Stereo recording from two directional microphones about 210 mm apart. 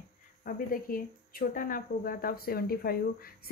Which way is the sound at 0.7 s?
40° left (ahead or behind).